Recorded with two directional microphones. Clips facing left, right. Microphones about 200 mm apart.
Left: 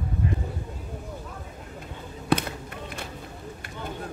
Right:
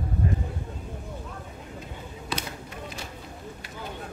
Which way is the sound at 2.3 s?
55° left (ahead or behind).